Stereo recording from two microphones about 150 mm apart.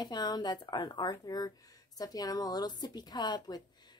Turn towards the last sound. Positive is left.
turn(degrees=25)  # may be behind; listen again after turning